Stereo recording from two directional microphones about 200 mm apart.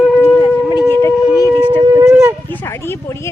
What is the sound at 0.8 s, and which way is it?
Howl, 10° left (ahead or behind).